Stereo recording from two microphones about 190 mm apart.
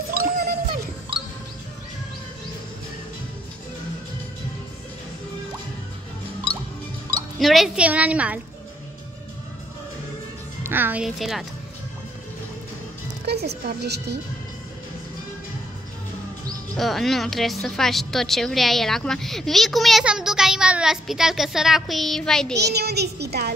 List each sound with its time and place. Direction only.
0.1 s music: 55° right (ahead or behind)
7.3 s a woman's voice: centre (ahead or behind)
10.6 s a woman's voice: 10° right (ahead or behind)
13.2 s music: 60° right (ahead or behind)
13.7 s a child's voice: 60° right (ahead or behind)
16.7 s a woman's voice: centre (ahead or behind)
22.6 s a child's voice: 60° right (ahead or behind)